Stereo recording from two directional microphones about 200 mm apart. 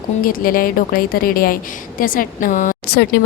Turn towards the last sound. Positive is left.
turn(degrees=55)  # may be behind; listen again after turning